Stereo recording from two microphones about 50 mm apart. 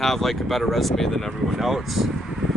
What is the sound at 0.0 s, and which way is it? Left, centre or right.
Speech, centre.